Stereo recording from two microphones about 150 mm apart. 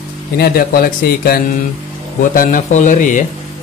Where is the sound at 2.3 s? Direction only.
65° left (ahead or behind).